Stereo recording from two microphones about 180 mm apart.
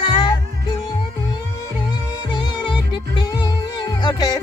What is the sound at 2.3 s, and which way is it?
Music, 25° left (ahead or behind).